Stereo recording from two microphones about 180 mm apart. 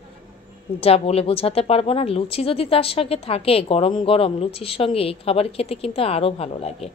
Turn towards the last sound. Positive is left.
turn(degrees=35)  # may be behind; listen again after turning